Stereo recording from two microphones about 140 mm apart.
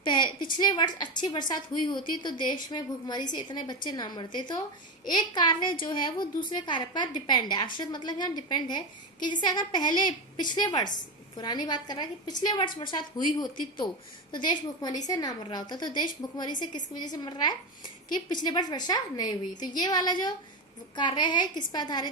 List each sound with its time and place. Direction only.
0.0 s a woman's voice: 35° left (ahead or behind)